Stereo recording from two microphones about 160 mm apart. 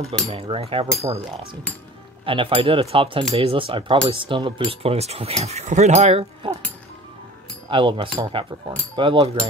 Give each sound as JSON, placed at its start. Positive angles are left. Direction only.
{"t": 0.3, "sound": "speech", "side_deg": -35}
{"t": 2.2, "sound": "speech", "side_deg": -35}
{"t": 7.7, "sound": "speech", "side_deg": -30}